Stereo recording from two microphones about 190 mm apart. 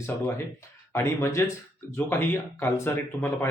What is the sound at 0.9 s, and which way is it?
Speech, 15° left (ahead or behind).